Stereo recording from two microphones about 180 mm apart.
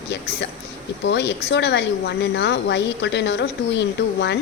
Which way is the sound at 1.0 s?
70° left (ahead or behind).